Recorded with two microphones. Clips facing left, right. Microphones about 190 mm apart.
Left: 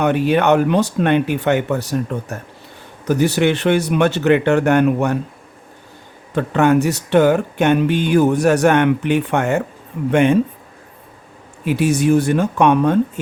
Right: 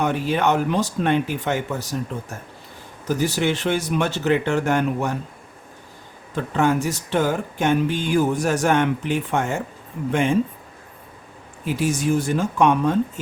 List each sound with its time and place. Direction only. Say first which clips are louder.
0.0 s speech: left 5 dB; 65° left (ahead or behind)
3.1 s speech: left 6 dB; 65° left (ahead or behind)
6.3 s speech: left 6 dB; 65° left (ahead or behind)
11.6 s speech: left 6 dB; 65° left (ahead or behind)